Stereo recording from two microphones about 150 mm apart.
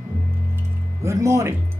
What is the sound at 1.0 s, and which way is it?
Speech, 20° right (ahead or behind).